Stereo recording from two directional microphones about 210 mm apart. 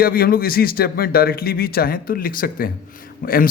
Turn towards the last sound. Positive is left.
turn(degrees=45)  # may be behind; listen again after turning